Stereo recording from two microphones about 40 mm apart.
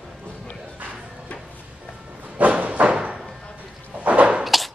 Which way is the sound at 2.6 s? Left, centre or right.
Right.